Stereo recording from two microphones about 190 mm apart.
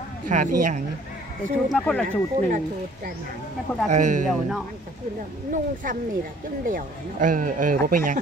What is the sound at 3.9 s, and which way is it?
Speech, 40° right (ahead or behind).